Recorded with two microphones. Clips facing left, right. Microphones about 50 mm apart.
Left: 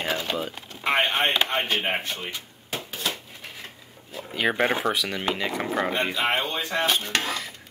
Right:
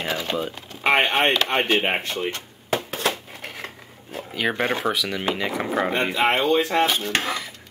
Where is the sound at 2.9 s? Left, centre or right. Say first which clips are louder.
Right 6 dB; right.